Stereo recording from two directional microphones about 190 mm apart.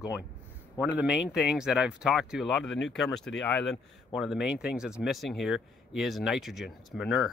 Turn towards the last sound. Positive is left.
turn(degrees=0)  # may be behind; listen again after turning